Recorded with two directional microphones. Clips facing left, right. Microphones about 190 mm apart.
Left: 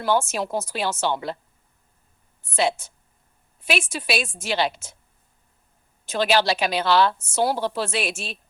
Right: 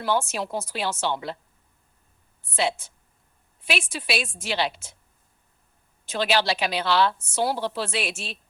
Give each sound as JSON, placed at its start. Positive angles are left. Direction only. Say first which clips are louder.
{"t": 0.0, "sound": "a woman's voice", "louder": "left 3 dB", "side_deg": 45}
{"t": 2.4, "sound": "a woman's voice", "louder": "left 3 dB", "side_deg": 45}
{"t": 6.1, "sound": "a woman's voice", "louder": "left 3 dB", "side_deg": 45}